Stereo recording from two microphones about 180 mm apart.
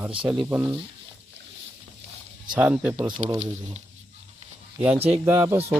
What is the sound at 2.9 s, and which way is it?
Speech, 25° right (ahead or behind).